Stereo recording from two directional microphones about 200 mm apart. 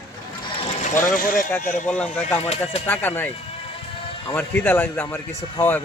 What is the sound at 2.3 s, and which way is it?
Speech, 30° left (ahead or behind).